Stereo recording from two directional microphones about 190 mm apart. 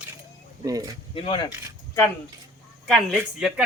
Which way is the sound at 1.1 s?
25° left (ahead or behind).